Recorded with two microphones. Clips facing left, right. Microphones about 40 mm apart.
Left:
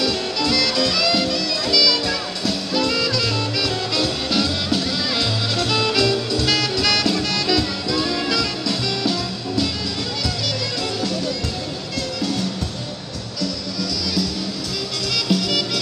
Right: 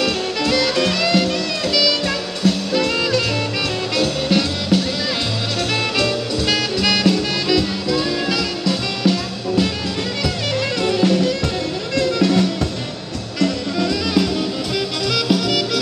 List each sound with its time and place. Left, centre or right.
0.0 s music: right
1.2 s music: centre
10.8 s music: right
13.4 s music: right
15.2 s music: centre